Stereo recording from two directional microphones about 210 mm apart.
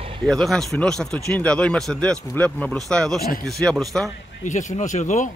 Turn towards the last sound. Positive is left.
turn(degrees=35)  # may be behind; listen again after turning